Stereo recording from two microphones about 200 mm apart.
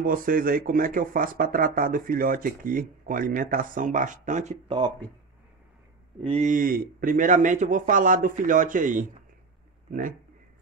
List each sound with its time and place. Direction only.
0.0 s speech: 45° right (ahead or behind)
6.2 s speech: 35° right (ahead or behind)